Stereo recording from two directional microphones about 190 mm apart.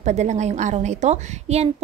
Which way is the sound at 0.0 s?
35° right (ahead or behind).